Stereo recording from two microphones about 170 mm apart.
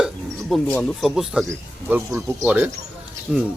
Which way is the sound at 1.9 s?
15° right (ahead or behind).